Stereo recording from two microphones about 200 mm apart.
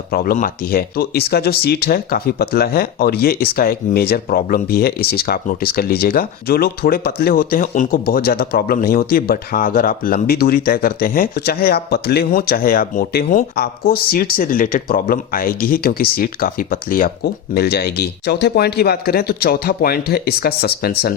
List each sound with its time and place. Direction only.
0.1 s speech: 50° left (ahead or behind)